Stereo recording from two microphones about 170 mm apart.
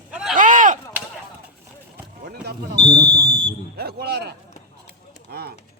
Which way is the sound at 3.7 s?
65° right (ahead or behind).